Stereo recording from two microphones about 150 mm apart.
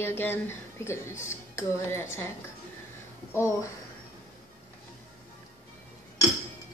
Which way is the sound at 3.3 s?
20° left (ahead or behind).